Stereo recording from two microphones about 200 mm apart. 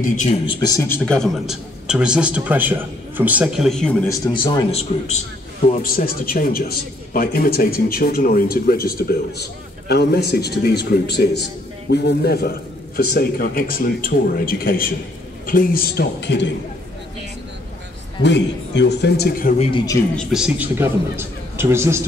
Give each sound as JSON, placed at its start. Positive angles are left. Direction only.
{"t": 0.0, "sound": "a man's voice", "side_deg": 40}
{"t": 0.6, "sound": "a man's voice", "side_deg": 15}
{"t": 4.3, "sound": "a man's voice", "side_deg": 20}
{"t": 18.2, "sound": "a man's voice", "side_deg": 60}
{"t": 20.2, "sound": "a man's voice", "side_deg": 0}